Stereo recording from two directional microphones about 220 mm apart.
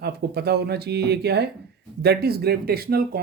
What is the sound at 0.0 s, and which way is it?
Speech, 45° right (ahead or behind).